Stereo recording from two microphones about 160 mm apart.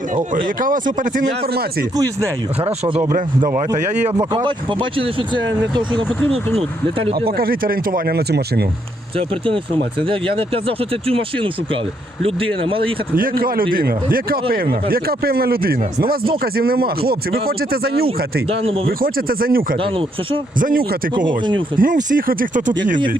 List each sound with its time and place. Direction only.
0.4 s speech: 55° right (ahead or behind)
3.1 s speech: 55° right (ahead or behind)
4.3 s speech: 25° right (ahead or behind)
6.6 s speech: 35° right (ahead or behind)
7.3 s speech: 65° right (ahead or behind); by 8.6 s 85° right
10.1 s speech: 35° right (ahead or behind)
12.2 s speech: 35° right (ahead or behind)
13.1 s speech: 65° right (ahead or behind)
19.8 s speech: 35° right (ahead or behind)
20.6 s speech: 60° right (ahead or behind)
21.2 s speech: 30° right (ahead or behind)
21.8 s speech: 60° right (ahead or behind)